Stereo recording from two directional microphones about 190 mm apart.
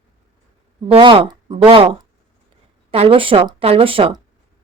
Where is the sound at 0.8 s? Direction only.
25° right (ahead or behind).